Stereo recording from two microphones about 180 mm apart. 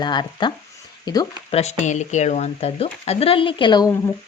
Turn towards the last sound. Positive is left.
turn(degrees=25)  # may be behind; listen again after turning